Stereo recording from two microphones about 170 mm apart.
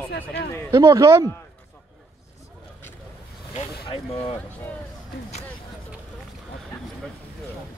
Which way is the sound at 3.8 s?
30° left (ahead or behind).